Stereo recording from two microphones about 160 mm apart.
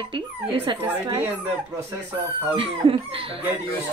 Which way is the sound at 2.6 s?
35° right (ahead or behind).